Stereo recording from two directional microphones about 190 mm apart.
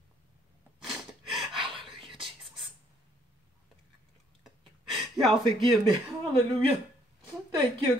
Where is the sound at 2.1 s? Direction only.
25° right (ahead or behind).